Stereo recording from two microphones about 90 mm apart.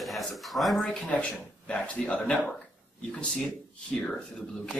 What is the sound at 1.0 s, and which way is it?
Speech, 10° left (ahead or behind).